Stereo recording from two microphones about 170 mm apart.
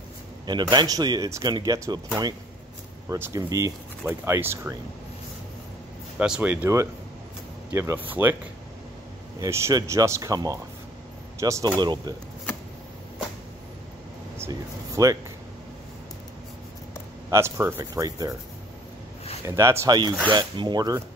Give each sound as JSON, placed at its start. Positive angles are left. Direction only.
{"t": 0.5, "sound": "speech", "side_deg": -25}
{"t": 6.1, "sound": "speech", "side_deg": -5}
{"t": 9.4, "sound": "speech", "side_deg": -15}
{"t": 14.4, "sound": "speech", "side_deg": -20}
{"t": 17.3, "sound": "speech", "side_deg": -15}
{"t": 19.4, "sound": "speech", "side_deg": -15}
{"t": 20.2, "sound": "speech", "side_deg": -25}